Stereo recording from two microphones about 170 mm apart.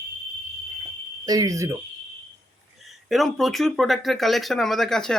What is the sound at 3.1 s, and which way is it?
Speech, centre (ahead or behind).